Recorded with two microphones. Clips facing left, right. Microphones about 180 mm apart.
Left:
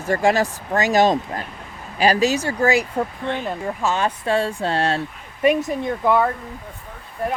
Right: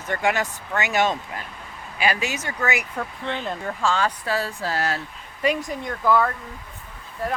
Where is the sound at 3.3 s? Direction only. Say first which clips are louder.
Left 3 dB; 10° left (ahead or behind).